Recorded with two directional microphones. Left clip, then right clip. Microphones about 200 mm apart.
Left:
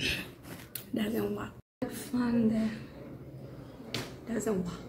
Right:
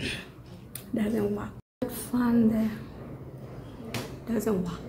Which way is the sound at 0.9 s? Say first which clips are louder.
Right 4 dB; centre (ahead or behind).